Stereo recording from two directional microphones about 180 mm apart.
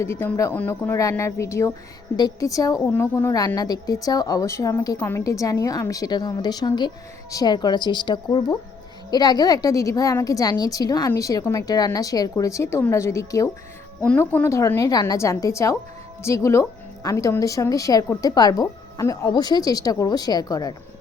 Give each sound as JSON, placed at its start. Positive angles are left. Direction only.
{"t": 0.0, "sound": "a woman's voice", "side_deg": 15}